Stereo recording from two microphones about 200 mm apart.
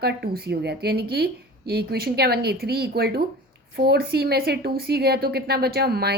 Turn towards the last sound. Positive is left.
turn(degrees=-50)  # may be behind; listen again after turning